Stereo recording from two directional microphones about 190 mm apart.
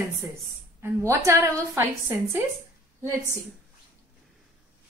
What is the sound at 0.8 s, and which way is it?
A woman's voice, 15° right (ahead or behind).